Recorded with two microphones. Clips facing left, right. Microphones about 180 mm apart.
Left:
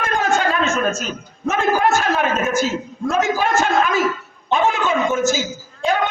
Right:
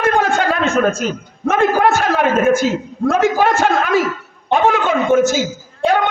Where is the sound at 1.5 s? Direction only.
60° right (ahead or behind).